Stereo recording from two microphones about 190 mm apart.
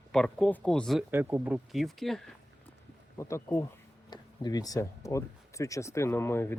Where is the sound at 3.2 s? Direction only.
15° left (ahead or behind).